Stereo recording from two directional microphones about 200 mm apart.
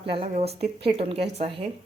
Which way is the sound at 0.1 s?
30° right (ahead or behind).